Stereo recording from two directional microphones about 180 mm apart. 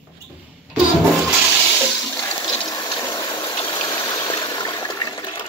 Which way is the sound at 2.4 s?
20° left (ahead or behind).